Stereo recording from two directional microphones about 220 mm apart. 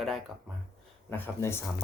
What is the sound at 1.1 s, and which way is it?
Speech, 10° left (ahead or behind).